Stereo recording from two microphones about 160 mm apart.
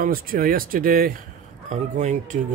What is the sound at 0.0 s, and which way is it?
Speech, 65° right (ahead or behind).